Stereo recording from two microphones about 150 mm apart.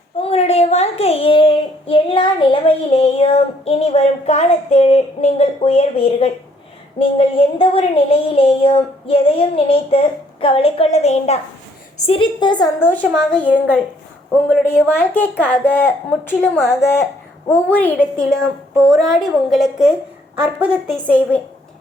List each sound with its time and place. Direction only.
0.2 s a child's voice: 45° left (ahead or behind)
7.0 s a sound: 40° left (ahead or behind)
10.4 s a woman's voice: 40° left (ahead or behind)
11.9 s a sound: 40° left (ahead or behind)
12.8 s speech: 10° left (ahead or behind)
14.5 s a woman's voice: 15° left (ahead or behind); by 20.7 s 5° right (ahead or behind)
20.9 s speech: 10° left (ahead or behind)